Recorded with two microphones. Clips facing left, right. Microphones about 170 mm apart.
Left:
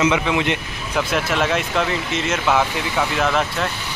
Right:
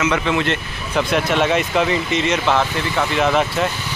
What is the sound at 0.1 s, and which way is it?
Speech, 15° left (ahead or behind).